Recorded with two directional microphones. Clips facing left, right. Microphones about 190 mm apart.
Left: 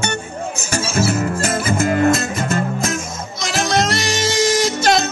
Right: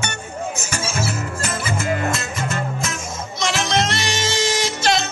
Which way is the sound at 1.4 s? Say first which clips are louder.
Left 6 dB; 45° left (ahead or behind).